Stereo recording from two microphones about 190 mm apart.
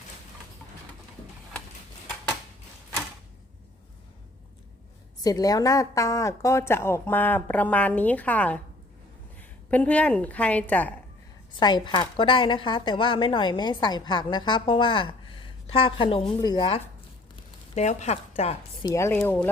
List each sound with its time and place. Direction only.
5.2 s a woman's voice: 20° left (ahead or behind)
11.6 s a woman's voice: 25° left (ahead or behind)
18.9 s a woman's voice: 15° left (ahead or behind)